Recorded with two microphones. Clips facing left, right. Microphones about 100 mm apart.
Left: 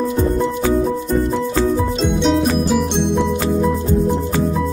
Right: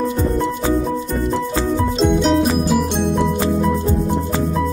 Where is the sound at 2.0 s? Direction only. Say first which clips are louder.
Right 5 dB; centre (ahead or behind).